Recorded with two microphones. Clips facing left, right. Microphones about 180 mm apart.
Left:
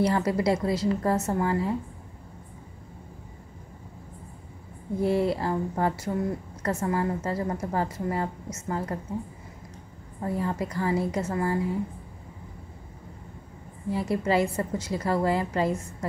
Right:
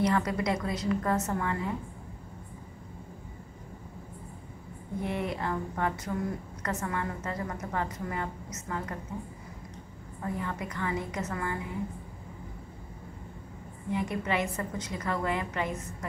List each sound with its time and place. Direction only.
0.0 s a woman's voice: 30° left (ahead or behind)
5.0 s a woman's voice: 30° left (ahead or behind)
10.2 s a woman's voice: 30° left (ahead or behind)
14.1 s a woman's voice: 30° left (ahead or behind)